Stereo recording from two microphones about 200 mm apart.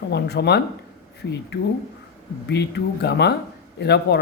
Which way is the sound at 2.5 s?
55° left (ahead or behind).